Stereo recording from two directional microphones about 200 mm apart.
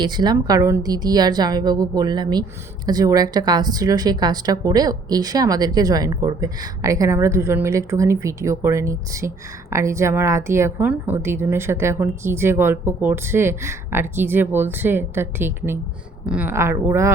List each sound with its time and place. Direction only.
0.0 s a woman's voice: 20° right (ahead or behind)